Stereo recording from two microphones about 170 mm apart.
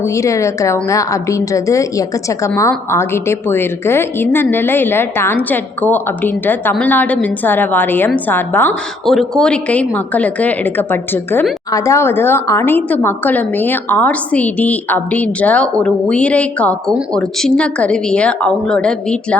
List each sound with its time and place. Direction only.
0.0 s a woman's voice: 20° left (ahead or behind)